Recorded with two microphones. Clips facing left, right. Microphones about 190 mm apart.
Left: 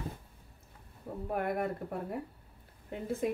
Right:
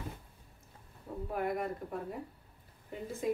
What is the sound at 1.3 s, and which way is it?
A woman's voice, 60° left (ahead or behind).